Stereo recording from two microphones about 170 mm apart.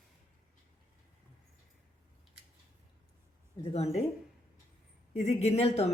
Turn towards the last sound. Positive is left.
turn(degrees=35)  # may be behind; listen again after turning